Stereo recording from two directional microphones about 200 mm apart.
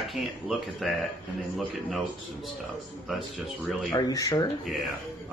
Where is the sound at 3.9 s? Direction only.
20° left (ahead or behind).